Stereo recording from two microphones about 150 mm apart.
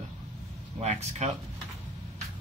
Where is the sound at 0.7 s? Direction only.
45° right (ahead or behind).